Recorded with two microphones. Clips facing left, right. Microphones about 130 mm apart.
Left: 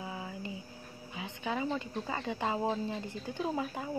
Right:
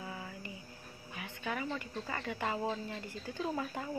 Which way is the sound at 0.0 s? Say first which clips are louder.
Left 4 dB; 15° left (ahead or behind).